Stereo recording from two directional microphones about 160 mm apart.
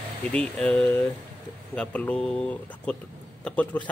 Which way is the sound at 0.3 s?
5° left (ahead or behind).